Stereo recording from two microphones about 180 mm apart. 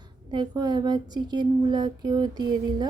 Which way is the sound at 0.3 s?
25° right (ahead or behind).